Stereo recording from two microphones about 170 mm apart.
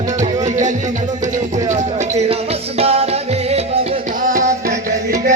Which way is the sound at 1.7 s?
45° right (ahead or behind).